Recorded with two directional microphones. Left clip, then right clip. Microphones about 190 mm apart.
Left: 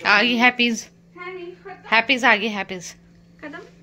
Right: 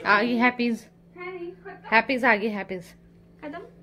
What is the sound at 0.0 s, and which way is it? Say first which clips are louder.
Speech: left 5 dB; 5° right (ahead or behind).